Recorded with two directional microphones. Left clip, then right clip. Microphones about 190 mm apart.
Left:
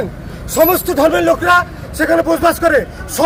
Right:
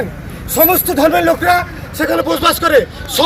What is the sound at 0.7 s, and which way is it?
Speech, 30° left (ahead or behind).